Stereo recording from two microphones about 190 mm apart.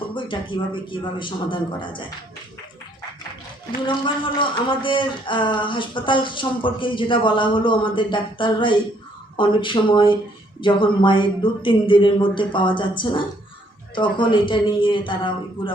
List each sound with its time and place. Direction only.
0.1 s speech: 25° left (ahead or behind)
3.8 s speech: 25° left (ahead or behind)